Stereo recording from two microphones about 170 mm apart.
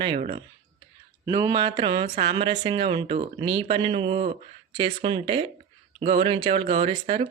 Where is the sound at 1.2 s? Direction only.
25° right (ahead or behind).